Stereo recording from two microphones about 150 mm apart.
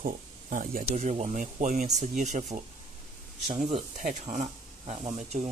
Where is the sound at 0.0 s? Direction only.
65° right (ahead or behind).